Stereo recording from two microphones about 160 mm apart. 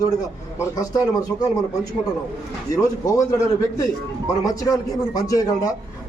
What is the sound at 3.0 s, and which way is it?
A man's voice, 20° left (ahead or behind).